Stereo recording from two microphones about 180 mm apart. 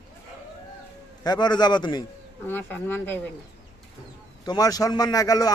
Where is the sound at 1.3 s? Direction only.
25° left (ahead or behind).